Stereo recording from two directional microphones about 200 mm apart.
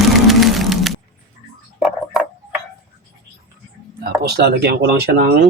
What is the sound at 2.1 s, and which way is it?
Clock, centre (ahead or behind).